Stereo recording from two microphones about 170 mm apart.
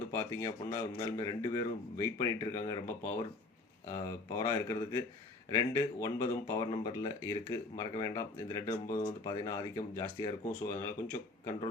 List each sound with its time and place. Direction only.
0.1 s speech: 15° left (ahead or behind)
4.3 s speech: 20° left (ahead or behind)